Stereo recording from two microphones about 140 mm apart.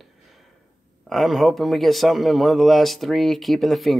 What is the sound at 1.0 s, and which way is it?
A man's voice, centre (ahead or behind).